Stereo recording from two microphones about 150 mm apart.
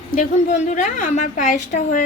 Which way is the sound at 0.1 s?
55° left (ahead or behind).